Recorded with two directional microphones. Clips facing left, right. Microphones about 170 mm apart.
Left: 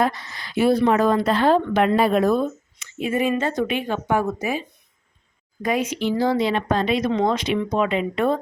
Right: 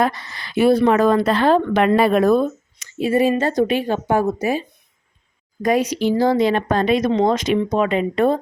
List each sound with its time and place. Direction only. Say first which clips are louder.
0.0 s a woman's voice: right 2 dB; 70° right (ahead or behind)
2.7 s speech: right 6 dB; 40° right (ahead or behind)
5.6 s a woman's voice: right 5 dB; 40° right (ahead or behind)